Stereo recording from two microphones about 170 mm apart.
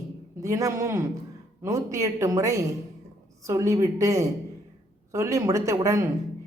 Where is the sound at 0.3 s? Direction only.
20° right (ahead or behind).